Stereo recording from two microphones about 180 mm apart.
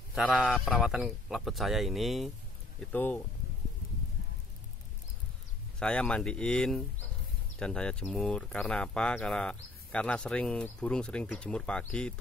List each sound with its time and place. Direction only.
0.1 s speech: 5° right (ahead or behind)
5.8 s speech: 5° left (ahead or behind)